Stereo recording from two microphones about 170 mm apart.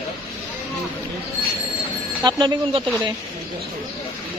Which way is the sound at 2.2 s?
25° right (ahead or behind).